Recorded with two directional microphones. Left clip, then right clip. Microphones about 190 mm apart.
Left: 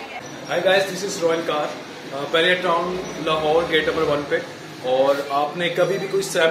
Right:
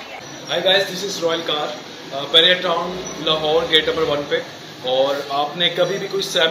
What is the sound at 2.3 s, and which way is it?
Speech, 5° left (ahead or behind).